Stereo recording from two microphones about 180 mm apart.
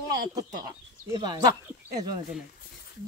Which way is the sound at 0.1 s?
20° right (ahead or behind).